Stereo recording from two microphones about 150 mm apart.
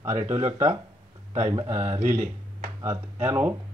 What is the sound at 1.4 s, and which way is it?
Speech, 25° right (ahead or behind).